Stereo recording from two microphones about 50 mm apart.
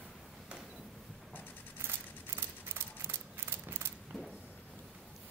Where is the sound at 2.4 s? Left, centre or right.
Right.